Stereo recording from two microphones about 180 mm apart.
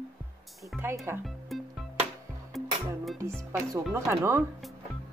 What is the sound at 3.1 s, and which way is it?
Speech, 15° right (ahead or behind).